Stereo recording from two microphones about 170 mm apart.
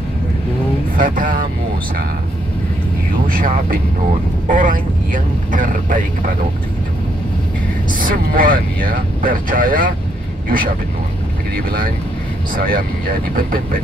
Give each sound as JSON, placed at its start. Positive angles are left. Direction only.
{"t": 0.9, "sound": "speech", "side_deg": -55}
{"t": 3.3, "sound": "speech", "side_deg": -55}
{"t": 7.9, "sound": "speech", "side_deg": -55}
{"t": 11.5, "sound": "speech", "side_deg": -60}